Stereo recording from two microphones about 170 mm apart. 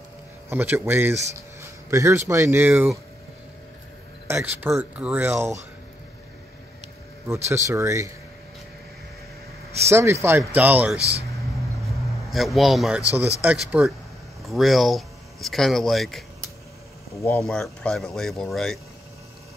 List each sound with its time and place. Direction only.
0.5 s speech: 10° right (ahead or behind)
4.3 s speech: 10° right (ahead or behind)
7.2 s speech: 15° right (ahead or behind)
9.8 s speech: 15° right (ahead or behind)
11.0 s speech: 35° right (ahead or behind)
12.3 s speech: centre (ahead or behind)
17.1 s speech: 15° left (ahead or behind)
17.4 s speech: 5° left (ahead or behind)